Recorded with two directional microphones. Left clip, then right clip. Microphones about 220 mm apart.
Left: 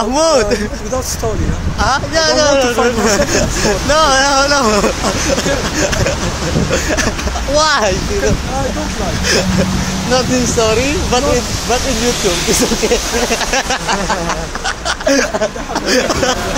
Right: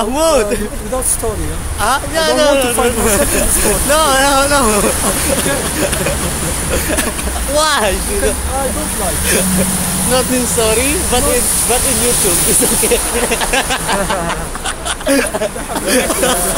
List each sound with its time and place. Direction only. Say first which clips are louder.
0.0 s speech: left 1 dB; 25° left (ahead or behind)
1.8 s speech: left 1 dB; 25° left (ahead or behind)
6.7 s speech: left 1 dB; 15° left (ahead or behind)
10.1 s speech: left 2 dB; 15° left (ahead or behind)
13.3 s speech: even; 20° left (ahead or behind)
15.9 s speech: even; 20° left (ahead or behind)